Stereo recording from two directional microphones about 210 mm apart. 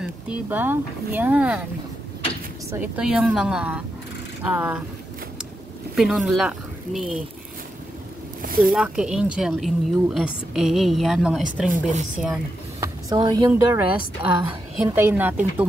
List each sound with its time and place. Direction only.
0.0 s speech: 5° right (ahead or behind)
2.7 s a woman's voice: 5° right (ahead or behind)
5.9 s speech: centre (ahead or behind)
8.4 s zipper: 45° right (ahead or behind)
8.7 s a woman's voice: 5° right (ahead or behind)
11.7 s speech: 35° right (ahead or behind)
12.8 s speech: 15° right (ahead or behind)